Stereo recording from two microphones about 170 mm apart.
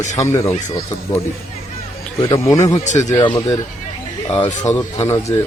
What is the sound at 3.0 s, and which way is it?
Speech, 30° left (ahead or behind).